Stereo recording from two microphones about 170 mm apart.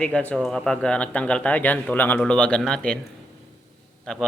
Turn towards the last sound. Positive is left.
turn(degrees=5)  # may be behind; listen again after turning